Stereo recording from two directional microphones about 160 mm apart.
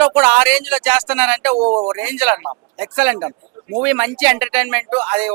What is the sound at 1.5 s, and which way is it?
Speech, 45° right (ahead or behind).